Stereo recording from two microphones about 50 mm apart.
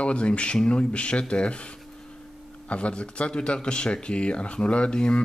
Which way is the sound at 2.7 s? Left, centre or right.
Left.